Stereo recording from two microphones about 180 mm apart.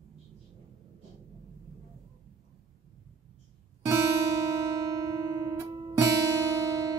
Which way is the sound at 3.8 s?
15° right (ahead or behind).